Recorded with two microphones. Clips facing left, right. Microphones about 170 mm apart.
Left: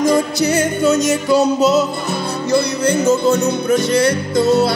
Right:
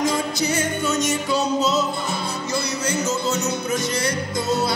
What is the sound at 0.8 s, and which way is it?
Music, 40° left (ahead or behind).